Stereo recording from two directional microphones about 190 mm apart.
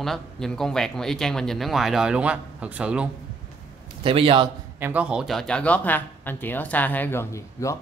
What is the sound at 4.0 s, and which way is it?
Speech, 30° right (ahead or behind).